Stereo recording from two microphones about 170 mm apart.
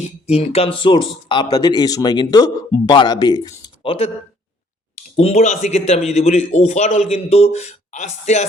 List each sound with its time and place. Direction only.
0.0 s speech: 40° left (ahead or behind)
5.1 s a man's voice: 35° left (ahead or behind)